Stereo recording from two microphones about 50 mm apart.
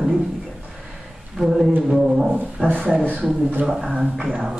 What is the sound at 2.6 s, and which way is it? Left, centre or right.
Speech, right.